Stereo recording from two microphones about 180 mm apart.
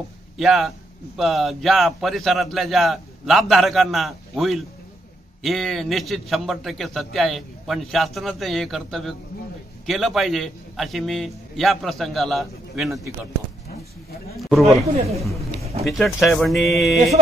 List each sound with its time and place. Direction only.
0.4 s a man's voice: centre (ahead or behind)
14.4 s a man's voice: centre (ahead or behind)
15.0 s speech: 35° right (ahead or behind)
15.9 s a man's voice: centre (ahead or behind)